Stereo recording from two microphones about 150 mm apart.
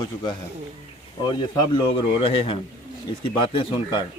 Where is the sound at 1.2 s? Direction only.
30° left (ahead or behind).